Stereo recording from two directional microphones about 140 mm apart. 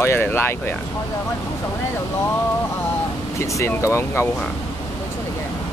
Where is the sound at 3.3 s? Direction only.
20° left (ahead or behind).